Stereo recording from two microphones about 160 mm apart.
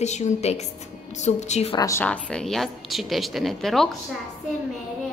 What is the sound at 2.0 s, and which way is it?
A woman's voice, 5° left (ahead or behind).